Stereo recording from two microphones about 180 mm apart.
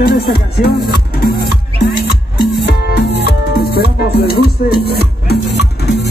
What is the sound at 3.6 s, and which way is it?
Music, 60° left (ahead or behind).